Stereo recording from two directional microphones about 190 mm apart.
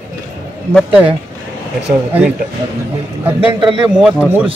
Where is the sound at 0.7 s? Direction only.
5° right (ahead or behind).